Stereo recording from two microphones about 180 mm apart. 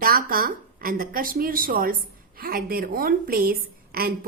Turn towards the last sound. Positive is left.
turn(degrees=-55)  # may be behind; listen again after turning